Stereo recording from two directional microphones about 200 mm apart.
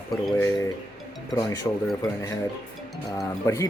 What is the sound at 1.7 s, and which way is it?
Speech, 15° left (ahead or behind).